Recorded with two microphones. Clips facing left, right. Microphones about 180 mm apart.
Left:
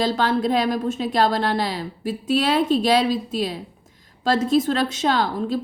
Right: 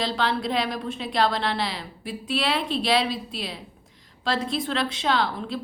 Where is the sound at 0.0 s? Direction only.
45° left (ahead or behind).